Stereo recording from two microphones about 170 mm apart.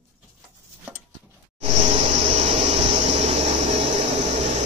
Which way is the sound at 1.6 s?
40° right (ahead or behind).